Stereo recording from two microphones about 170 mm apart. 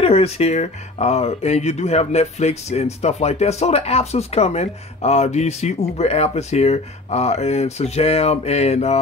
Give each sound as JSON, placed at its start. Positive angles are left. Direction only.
{"t": 0.0, "sound": "speech", "side_deg": 35}